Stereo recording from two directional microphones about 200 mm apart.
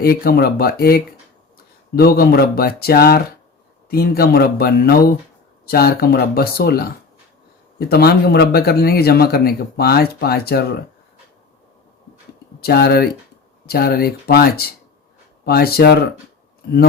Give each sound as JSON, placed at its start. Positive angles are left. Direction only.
{"t": 0.0, "sound": "speech", "side_deg": 50}
{"t": 12.6, "sound": "speech", "side_deg": 50}